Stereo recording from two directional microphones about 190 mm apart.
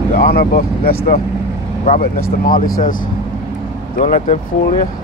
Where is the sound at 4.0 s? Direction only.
40° left (ahead or behind).